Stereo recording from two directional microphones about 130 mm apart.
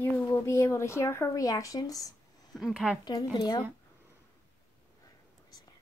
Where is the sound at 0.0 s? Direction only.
20° left (ahead or behind).